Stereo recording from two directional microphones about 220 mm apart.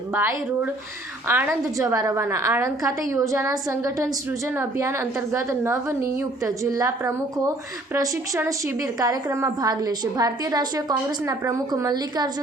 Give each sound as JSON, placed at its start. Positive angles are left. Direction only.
{"t": 0.1, "sound": "a woman's voice", "side_deg": -10}